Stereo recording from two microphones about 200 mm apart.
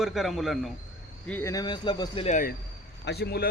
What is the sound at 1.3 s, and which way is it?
Speech, 15° left (ahead or behind).